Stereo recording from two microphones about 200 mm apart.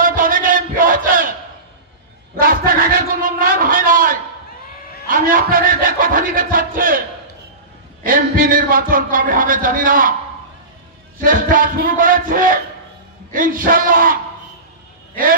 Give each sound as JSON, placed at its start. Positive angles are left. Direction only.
{"t": 0.0, "sound": "battle cry", "side_deg": -45}
{"t": 2.3, "sound": "a sound", "side_deg": -45}
{"t": 8.0, "sound": "a man's voice", "side_deg": -45}
{"t": 11.1, "sound": "speech", "side_deg": -45}